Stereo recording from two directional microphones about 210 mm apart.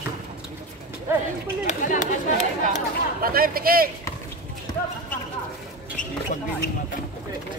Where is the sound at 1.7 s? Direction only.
35° left (ahead or behind).